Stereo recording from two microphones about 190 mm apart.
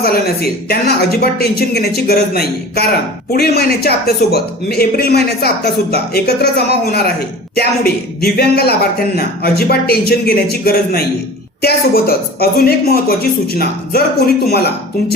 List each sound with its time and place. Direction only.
0.0 s a man's voice: 55° left (ahead or behind)